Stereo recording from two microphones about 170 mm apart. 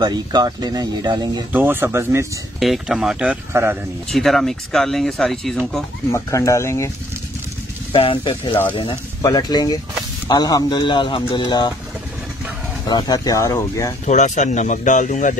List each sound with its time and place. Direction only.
0.0 s speech: 25° right (ahead or behind)
1.5 s speech: 10° right (ahead or behind)
2.6 s speech: centre (ahead or behind)
4.1 s speech: centre (ahead or behind)
6.1 s speech: 20° left (ahead or behind)
7.9 s speech: 30° left (ahead or behind)
12.8 s speech: 25° left (ahead or behind)
14.0 s speech: 45° left (ahead or behind)